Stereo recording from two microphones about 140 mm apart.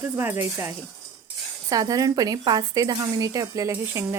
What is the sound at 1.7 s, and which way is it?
Speech, 25° right (ahead or behind).